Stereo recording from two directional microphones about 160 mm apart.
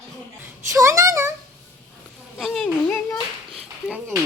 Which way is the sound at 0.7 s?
20° right (ahead or behind).